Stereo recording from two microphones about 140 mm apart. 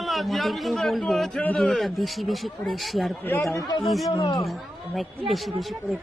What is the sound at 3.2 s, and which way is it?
Speech, 15° left (ahead or behind).